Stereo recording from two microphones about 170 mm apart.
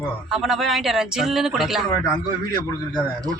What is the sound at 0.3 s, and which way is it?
A man's voice, centre (ahead or behind).